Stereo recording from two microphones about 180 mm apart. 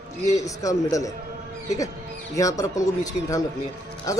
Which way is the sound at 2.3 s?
20° left (ahead or behind).